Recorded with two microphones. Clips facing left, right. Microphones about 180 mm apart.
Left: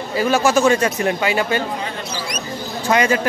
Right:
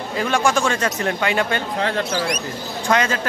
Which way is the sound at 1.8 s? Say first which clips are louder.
Right 6 dB; 75° right (ahead or behind).